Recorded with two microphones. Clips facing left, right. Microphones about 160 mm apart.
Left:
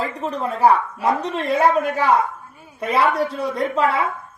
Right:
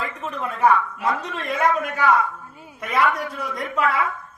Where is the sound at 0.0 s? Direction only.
35° left (ahead or behind).